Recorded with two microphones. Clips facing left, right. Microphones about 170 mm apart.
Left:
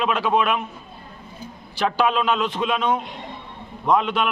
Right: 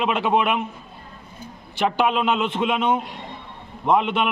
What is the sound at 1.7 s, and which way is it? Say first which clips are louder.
A man's voice: even; 20° right (ahead or behind).